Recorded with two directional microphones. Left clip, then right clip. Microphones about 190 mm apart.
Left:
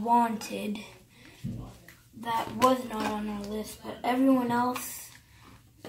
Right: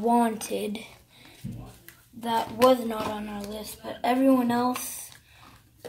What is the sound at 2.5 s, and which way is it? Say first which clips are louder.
A woman's voice: right 4 dB; 45° right (ahead or behind).